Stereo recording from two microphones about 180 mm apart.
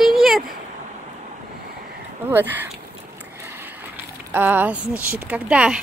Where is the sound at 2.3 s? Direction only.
10° right (ahead or behind).